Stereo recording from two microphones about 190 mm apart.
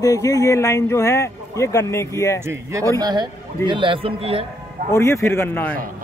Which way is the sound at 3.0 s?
20° right (ahead or behind).